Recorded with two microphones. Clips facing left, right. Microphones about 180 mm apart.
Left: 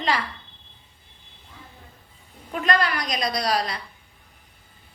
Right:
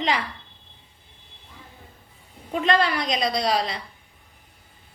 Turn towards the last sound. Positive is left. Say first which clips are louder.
# right 1 dB
turn(degrees=-25)  # may be behind; listen again after turning